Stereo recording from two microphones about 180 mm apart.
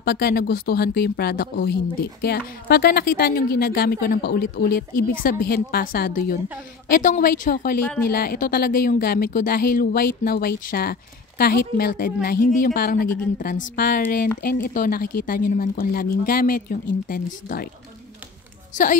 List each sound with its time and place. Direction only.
0.0 s speech: 60° left (ahead or behind)